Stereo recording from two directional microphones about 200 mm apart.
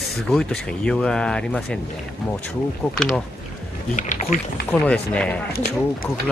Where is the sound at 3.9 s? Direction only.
40° left (ahead or behind).